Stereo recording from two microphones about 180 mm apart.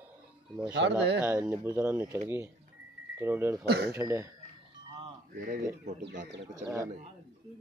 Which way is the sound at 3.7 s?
65° right (ahead or behind).